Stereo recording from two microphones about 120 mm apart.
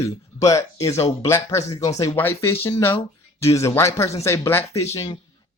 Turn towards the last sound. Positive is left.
turn(degrees=30)  # may be behind; listen again after turning